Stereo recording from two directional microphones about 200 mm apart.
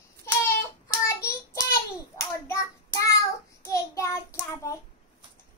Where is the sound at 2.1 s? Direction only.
15° left (ahead or behind).